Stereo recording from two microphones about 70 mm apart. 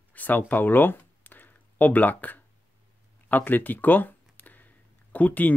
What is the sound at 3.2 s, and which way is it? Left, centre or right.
Speech, left.